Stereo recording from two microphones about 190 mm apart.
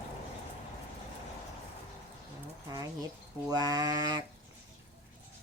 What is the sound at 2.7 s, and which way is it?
Speech, 20° right (ahead or behind).